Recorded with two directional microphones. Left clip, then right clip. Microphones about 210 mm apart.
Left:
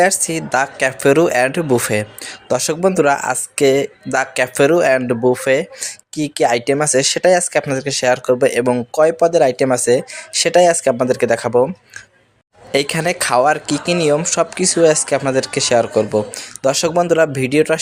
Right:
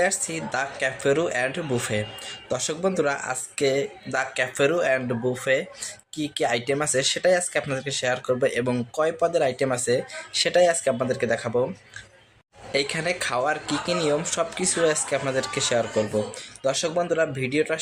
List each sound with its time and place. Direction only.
0.0 s speech: 45° left (ahead or behind)
12.7 s speech: 45° left (ahead or behind)